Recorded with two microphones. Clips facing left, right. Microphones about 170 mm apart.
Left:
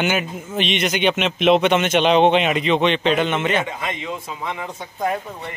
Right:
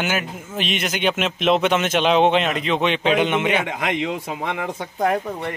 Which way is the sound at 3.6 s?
80° right.